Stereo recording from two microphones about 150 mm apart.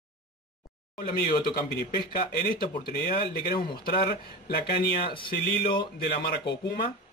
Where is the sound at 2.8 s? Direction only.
90° left.